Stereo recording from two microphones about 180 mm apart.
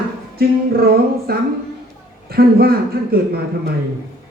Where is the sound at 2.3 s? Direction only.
60° right (ahead or behind).